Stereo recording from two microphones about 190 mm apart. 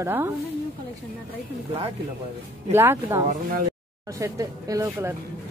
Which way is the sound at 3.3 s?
45° right (ahead or behind).